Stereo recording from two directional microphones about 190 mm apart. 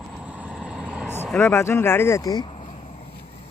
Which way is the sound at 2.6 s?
30° left (ahead or behind).